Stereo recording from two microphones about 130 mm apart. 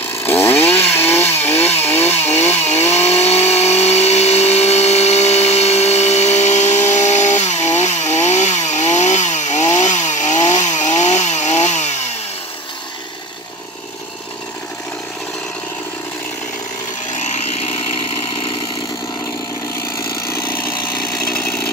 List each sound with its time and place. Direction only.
0.1 s chainsaw: 15° left (ahead or behind)
2.2 s chainsaw: 60° left (ahead or behind)
17.2 s chainsaw: 60° left (ahead or behind)
20.2 s vehicle: 15° left (ahead or behind)